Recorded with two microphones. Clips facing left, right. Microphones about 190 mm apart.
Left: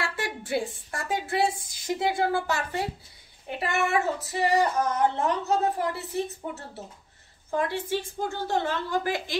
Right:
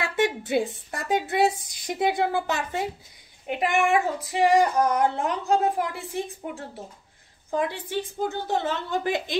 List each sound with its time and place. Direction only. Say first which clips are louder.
0.0 s speech: right 7 dB; 20° right (ahead or behind)